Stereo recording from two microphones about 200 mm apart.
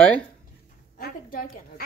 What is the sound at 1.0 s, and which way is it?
Speech, 50° left (ahead or behind).